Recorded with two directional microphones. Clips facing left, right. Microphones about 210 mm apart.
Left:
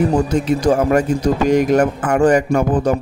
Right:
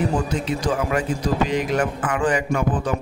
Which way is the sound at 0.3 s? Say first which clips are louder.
Left 8 dB; 45° left (ahead or behind).